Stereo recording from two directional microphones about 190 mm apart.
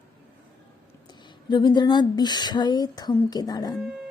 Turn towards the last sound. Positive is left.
turn(degrees=20)  # may be behind; listen again after turning